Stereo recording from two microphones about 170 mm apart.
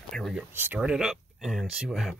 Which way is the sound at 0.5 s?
10° right (ahead or behind).